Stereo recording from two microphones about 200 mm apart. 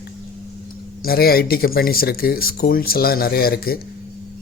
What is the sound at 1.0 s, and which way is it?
Speech, 50° left (ahead or behind).